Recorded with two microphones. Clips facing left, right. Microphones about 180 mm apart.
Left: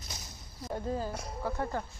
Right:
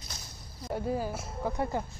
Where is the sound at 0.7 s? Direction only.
10° right (ahead or behind).